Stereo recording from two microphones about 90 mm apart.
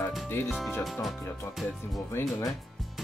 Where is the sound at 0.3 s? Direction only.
25° left (ahead or behind).